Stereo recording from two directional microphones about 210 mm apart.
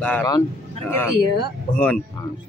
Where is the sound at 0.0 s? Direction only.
10° left (ahead or behind).